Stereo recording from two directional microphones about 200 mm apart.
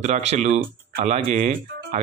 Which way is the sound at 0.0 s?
35° right (ahead or behind).